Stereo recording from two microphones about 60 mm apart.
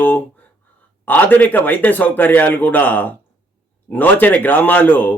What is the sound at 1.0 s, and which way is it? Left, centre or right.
A man's voice, left.